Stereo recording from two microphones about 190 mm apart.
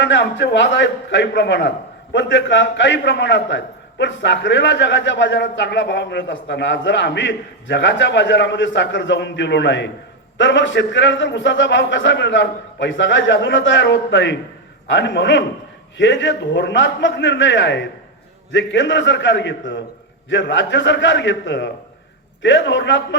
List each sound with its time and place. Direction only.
0.0 s a man's voice: 70° left (ahead or behind)